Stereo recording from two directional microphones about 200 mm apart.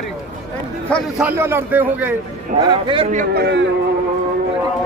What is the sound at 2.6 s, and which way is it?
Speech, 25° right (ahead or behind).